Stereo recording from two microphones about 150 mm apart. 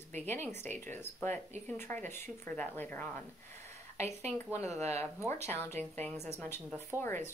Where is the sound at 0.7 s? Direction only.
15° left (ahead or behind).